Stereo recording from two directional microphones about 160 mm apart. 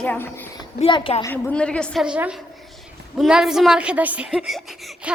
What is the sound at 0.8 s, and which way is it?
Speech, 30° left (ahead or behind).